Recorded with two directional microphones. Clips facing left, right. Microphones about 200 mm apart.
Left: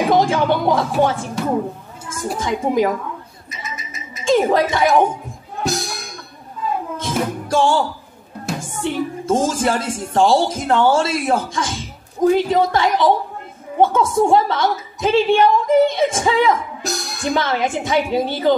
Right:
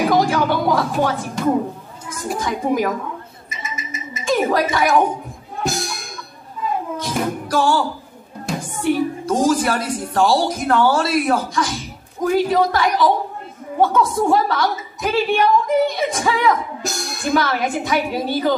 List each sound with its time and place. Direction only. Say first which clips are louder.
0.1 s speech: left 1 dB; 25° left (ahead or behind)
2.3 s speech: left 2 dB; 20° left (ahead or behind)
3.4 s a sound: right 1 dB; centre (ahead or behind)
4.2 s speech: left 3 dB; 25° left (ahead or behind)
5.6 s music: left 1 dB; centre (ahead or behind)
7.0 s music: even; 25° left (ahead or behind)
8.5 s music: right 1 dB; 5° left (ahead or behind)
8.8 s speech: right 2 dB; 25° left (ahead or behind)
16.8 s music: left 1 dB; centre (ahead or behind)
17.3 s speech: even; 25° left (ahead or behind)